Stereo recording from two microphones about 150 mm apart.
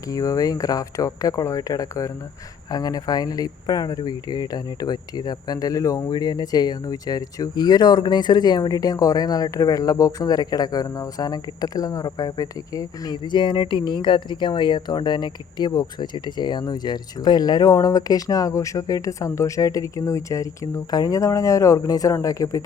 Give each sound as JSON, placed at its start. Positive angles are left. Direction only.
{"t": 0.1, "sound": "speech", "side_deg": 25}